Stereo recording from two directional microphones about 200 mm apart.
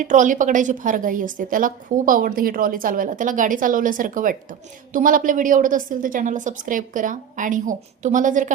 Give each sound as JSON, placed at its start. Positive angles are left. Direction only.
{"t": 0.0, "sound": "a woman's voice", "side_deg": -40}